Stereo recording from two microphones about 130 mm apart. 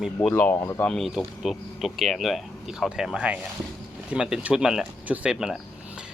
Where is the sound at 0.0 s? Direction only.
5° left (ahead or behind).